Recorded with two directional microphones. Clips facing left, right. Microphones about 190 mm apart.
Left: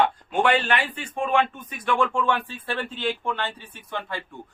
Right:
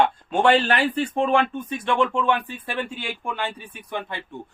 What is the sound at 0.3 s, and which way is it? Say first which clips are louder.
Speech: right 3 dB; 30° right (ahead or behind).